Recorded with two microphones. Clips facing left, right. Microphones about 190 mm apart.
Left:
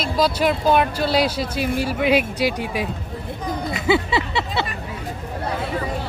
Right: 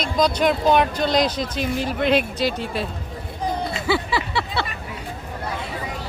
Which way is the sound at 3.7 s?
20° left (ahead or behind).